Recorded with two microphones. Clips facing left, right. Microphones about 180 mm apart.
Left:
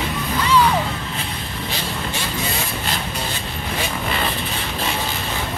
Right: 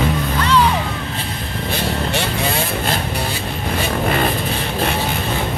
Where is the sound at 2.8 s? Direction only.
50° right (ahead or behind).